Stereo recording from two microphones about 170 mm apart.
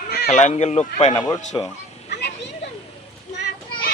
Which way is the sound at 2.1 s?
80° left.